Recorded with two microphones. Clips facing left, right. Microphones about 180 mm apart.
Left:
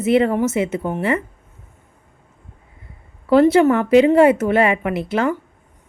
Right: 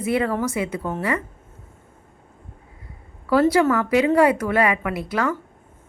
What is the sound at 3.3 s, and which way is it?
A woman's voice, 25° left (ahead or behind).